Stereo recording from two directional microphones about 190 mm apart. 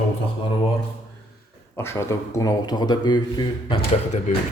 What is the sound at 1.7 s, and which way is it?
Speech, 15° left (ahead or behind).